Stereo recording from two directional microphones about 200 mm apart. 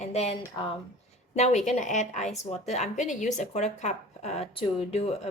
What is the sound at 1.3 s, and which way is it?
Speech, 35° left (ahead or behind).